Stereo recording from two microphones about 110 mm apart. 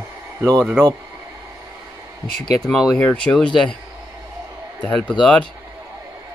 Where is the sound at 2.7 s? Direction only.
Centre (ahead or behind).